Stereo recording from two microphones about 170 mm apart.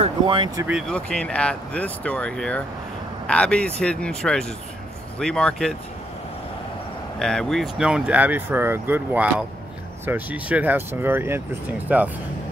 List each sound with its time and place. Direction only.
0.0 s speech: 30° right (ahead or behind)
0.7 s speech: 5° right (ahead or behind)
7.2 s speech: 5° left (ahead or behind)